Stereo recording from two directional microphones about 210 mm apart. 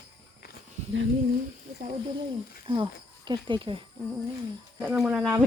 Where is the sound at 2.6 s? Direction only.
25° right (ahead or behind).